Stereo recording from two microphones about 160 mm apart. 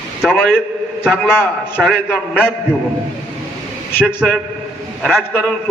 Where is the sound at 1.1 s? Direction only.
15° left (ahead or behind).